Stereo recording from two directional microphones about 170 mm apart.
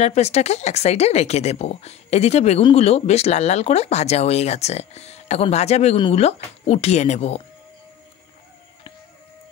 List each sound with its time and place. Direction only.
0.0 s speech: 40° left (ahead or behind)